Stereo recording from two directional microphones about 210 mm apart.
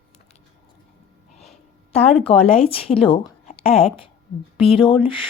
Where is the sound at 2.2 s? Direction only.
25° left (ahead or behind).